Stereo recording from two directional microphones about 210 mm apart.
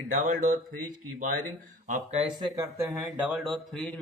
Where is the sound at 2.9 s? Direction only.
5° right (ahead or behind).